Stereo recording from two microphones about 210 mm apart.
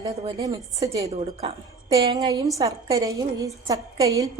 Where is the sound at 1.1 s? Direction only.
30° right (ahead or behind).